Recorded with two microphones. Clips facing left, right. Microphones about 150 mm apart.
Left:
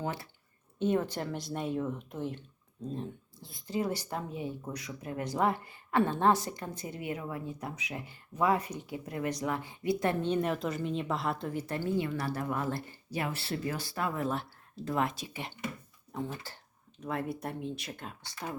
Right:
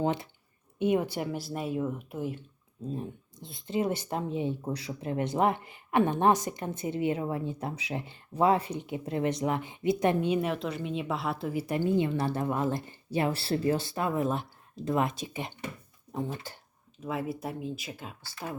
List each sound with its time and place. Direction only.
0.0 s speech: 20° right (ahead or behind)
17.0 s speech: 5° right (ahead or behind)